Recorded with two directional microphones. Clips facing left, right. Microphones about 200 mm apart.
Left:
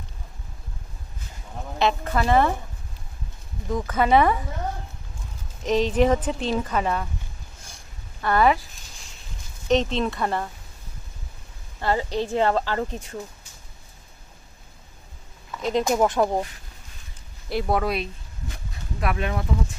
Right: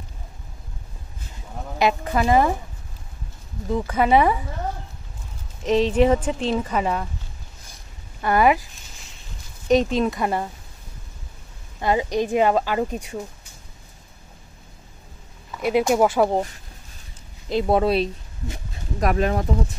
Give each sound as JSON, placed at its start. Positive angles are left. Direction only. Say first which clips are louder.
{"t": 1.8, "sound": "speech", "louder": "right 2 dB", "side_deg": -10}
{"t": 3.7, "sound": "speech", "louder": "right 1 dB", "side_deg": -10}
{"t": 5.6, "sound": "speech", "louder": "right 2 dB", "side_deg": 0}
{"t": 8.2, "sound": "speech", "louder": "right 2 dB", "side_deg": -10}
{"t": 9.7, "sound": "speech", "louder": "right 3 dB", "side_deg": -10}
{"t": 11.8, "sound": "speech", "louder": "right 3 dB", "side_deg": -15}
{"t": 15.6, "sound": "speech", "louder": "right 3 dB", "side_deg": -10}
{"t": 17.5, "sound": "speech", "louder": "right 5 dB", "side_deg": -20}